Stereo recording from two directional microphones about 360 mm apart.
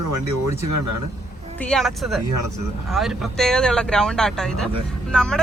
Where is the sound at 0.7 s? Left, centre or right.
Right.